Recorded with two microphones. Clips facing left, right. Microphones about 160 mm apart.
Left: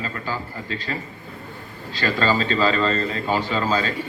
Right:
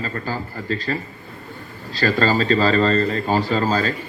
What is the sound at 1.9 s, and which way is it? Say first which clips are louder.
A man's voice: right 3 dB; 40° right (ahead or behind).